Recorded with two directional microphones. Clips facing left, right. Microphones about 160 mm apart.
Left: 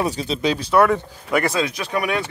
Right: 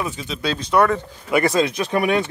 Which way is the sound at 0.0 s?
35° left (ahead or behind).